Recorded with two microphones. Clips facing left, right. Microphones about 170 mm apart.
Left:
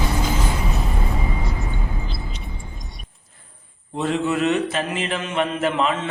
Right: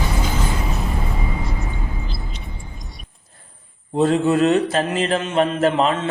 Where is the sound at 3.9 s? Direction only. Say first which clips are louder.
Right 5 dB; 35° right (ahead or behind).